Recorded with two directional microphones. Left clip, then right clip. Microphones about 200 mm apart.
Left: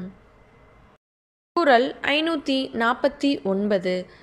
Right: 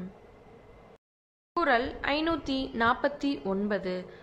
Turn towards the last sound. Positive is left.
turn(degrees=15)  # may be behind; listen again after turning